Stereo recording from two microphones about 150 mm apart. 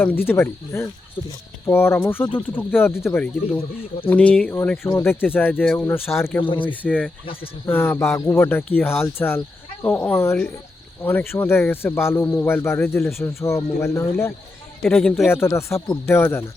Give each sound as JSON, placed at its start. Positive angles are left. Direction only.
{"t": 0.0, "sound": "speech", "side_deg": 15}
{"t": 6.4, "sound": "speech", "side_deg": 35}
{"t": 6.7, "sound": "speech", "side_deg": 10}